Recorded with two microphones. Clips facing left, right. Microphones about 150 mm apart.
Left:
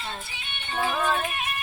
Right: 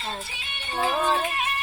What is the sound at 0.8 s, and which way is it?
Music, 35° right (ahead or behind).